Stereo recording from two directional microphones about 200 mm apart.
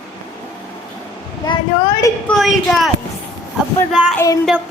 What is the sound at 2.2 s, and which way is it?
Speech, centre (ahead or behind).